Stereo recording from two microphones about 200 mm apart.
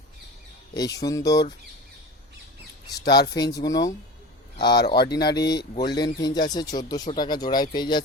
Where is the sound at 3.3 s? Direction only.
20° left (ahead or behind).